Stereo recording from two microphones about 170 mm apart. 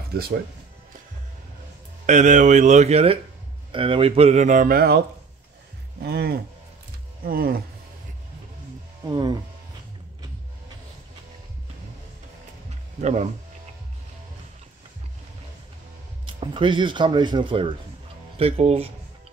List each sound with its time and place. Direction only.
2.0 s speech: 45° right (ahead or behind); by 5.0 s 65° right (ahead or behind)
6.0 s speech: 65° right (ahead or behind)
9.0 s speech: 25° right (ahead or behind)
13.0 s speech: 40° right (ahead or behind)
16.3 s speech: 30° right (ahead or behind)